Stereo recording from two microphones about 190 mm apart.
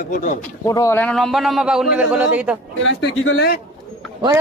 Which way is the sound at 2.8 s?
70° left (ahead or behind).